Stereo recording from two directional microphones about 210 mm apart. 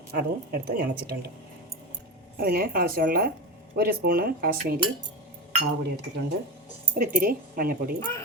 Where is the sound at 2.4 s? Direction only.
45° right (ahead or behind).